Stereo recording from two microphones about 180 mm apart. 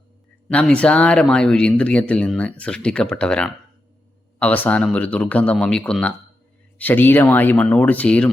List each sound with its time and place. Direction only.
0.4 s speech: 5° left (ahead or behind)